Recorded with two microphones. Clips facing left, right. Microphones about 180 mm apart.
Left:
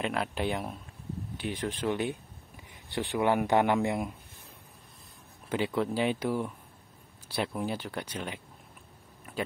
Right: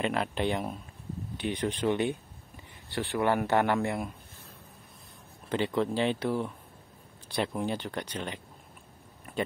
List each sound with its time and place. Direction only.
0.0 s speech: centre (ahead or behind)
2.9 s a man's voice: 15° left (ahead or behind)
5.5 s a man's voice: 10° left (ahead or behind)